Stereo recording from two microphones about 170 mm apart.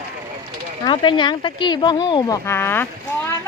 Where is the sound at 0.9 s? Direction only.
30° left (ahead or behind); by 2.8 s 15° left (ahead or behind).